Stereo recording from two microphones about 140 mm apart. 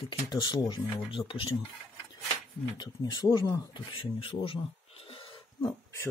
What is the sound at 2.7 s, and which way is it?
Speech, 30° left (ahead or behind).